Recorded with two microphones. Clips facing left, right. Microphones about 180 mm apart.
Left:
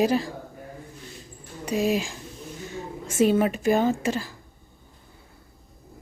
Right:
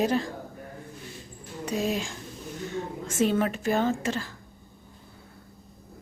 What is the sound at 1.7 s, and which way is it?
A woman's voice, 10° left (ahead or behind).